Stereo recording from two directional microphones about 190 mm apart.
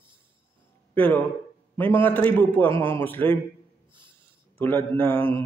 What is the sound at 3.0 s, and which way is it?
Speech, 10° left (ahead or behind).